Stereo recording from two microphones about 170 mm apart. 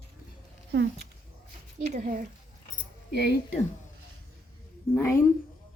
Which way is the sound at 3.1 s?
75° left (ahead or behind).